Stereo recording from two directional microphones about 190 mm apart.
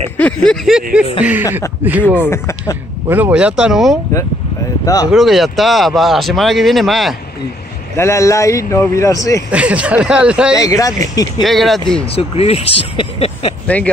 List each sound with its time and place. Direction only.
0.2 s speech: 5° left (ahead or behind)
2.2 s a man's voice: 15° left (ahead or behind)
3.1 s speech: 10° right (ahead or behind)
4.8 s speech: 20° left (ahead or behind)
5.1 s speech: centre (ahead or behind)
7.9 s a man's voice: 15° left (ahead or behind)
9.5 s speech: 5° right (ahead or behind)
10.5 s a man's voice: 15° left (ahead or behind)
11.4 s speech: centre (ahead or behind)
12.2 s speech: 30° left (ahead or behind)